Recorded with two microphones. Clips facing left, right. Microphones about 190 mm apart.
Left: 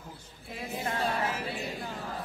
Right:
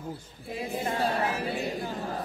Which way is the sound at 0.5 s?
35° right (ahead or behind).